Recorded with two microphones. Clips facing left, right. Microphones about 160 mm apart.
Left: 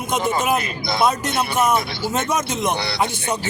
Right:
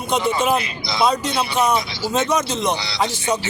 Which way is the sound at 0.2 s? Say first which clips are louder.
Right 1 dB; 45° left (ahead or behind).